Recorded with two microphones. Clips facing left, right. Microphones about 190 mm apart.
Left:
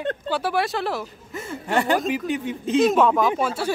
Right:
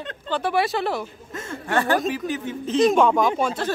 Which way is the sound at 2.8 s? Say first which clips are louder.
Right 1 dB; 5° left (ahead or behind).